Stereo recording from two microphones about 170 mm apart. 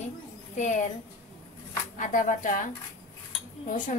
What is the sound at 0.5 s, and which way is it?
Speech, 45° left (ahead or behind).